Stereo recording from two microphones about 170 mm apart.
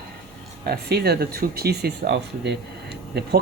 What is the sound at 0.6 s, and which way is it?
Speech, 70° right (ahead or behind).